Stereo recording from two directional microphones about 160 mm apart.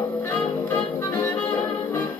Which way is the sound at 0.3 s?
10° left (ahead or behind).